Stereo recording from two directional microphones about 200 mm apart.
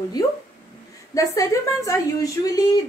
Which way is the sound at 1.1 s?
15° left (ahead or behind).